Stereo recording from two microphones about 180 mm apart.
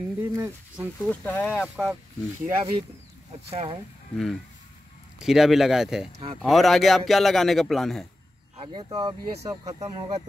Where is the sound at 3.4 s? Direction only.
30° right (ahead or behind).